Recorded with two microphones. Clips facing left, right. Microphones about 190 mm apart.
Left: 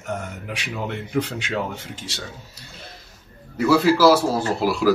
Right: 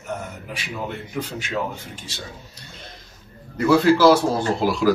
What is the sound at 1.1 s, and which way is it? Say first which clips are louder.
Speech: left 5 dB; 75° left (ahead or behind).